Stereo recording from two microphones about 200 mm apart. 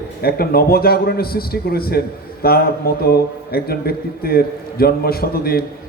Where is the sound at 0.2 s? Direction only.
50° left (ahead or behind).